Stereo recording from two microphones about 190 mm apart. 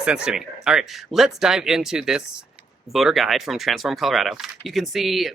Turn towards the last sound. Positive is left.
turn(degrees=0)  # may be behind; listen again after turning